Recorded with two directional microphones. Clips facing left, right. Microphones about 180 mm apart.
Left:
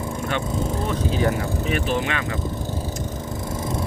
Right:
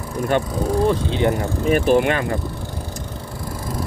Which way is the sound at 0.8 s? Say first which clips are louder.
Right 4 dB; 25° right (ahead or behind).